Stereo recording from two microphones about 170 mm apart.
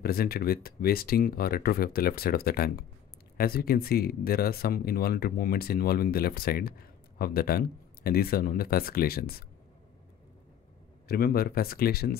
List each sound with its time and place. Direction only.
0.0 s speech: 65° left (ahead or behind)
11.1 s speech: 60° left (ahead or behind)